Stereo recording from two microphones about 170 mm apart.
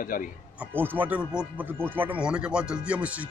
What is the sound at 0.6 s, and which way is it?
Speech, 10° right (ahead or behind).